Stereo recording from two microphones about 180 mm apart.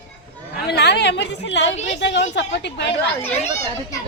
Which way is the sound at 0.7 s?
70° left (ahead or behind).